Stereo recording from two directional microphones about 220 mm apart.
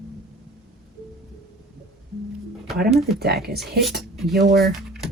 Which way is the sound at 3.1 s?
45° right (ahead or behind).